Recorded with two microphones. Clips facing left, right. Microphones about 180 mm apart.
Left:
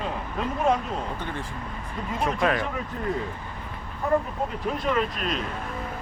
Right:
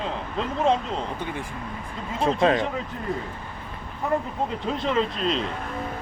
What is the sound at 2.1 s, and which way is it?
Speech, 25° right (ahead or behind).